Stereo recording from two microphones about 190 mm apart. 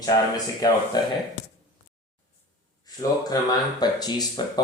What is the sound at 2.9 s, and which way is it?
Speech, 20° left (ahead or behind).